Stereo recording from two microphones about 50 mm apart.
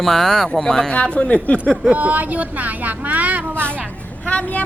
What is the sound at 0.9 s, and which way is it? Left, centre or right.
Speech, left.